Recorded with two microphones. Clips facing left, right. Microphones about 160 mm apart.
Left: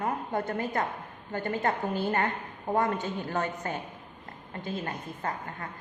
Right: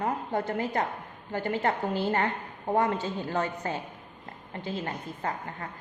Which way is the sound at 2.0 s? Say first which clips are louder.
Right 1 dB; 25° right (ahead or behind).